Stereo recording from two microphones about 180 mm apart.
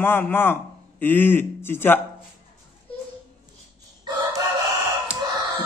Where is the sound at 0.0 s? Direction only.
10° left (ahead or behind).